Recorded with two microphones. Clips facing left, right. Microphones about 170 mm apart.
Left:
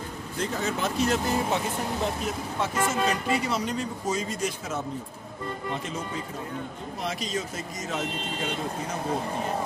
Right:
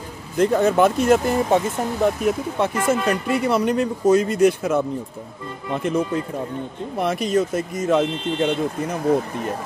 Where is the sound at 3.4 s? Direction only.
60° right (ahead or behind).